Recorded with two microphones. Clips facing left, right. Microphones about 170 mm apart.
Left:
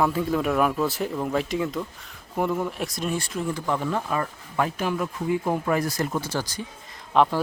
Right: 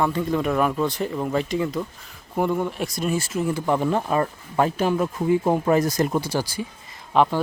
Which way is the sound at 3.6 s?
20° right (ahead or behind).